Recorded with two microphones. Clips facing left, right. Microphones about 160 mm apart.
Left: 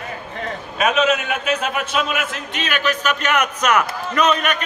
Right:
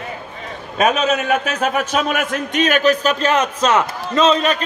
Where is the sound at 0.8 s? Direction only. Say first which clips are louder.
Right 1 dB; 40° right (ahead or behind).